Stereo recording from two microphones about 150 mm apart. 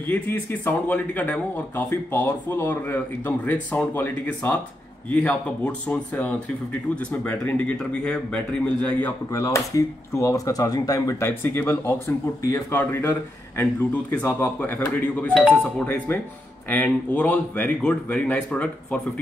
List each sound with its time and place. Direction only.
0.1 s speech: 10° left (ahead or behind)
9.3 s speech: 20° left (ahead or behind)